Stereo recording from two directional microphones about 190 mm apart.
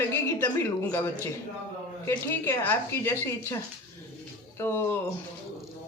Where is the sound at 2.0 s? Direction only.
15° left (ahead or behind).